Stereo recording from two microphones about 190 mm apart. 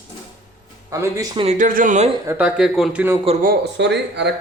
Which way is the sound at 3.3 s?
30° right (ahead or behind).